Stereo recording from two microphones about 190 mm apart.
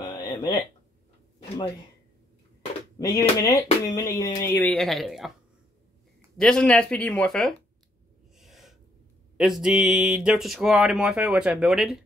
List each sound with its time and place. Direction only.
0.0 s a sound: 20° left (ahead or behind)
3.0 s speech: 20° left (ahead or behind); by 5.3 s centre (ahead or behind)
6.3 s speech: 5° left (ahead or behind)
8.4 s gasp: centre (ahead or behind)
9.4 s speech: 5° right (ahead or behind)